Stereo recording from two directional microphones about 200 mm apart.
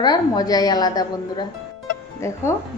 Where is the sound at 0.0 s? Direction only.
20° left (ahead or behind).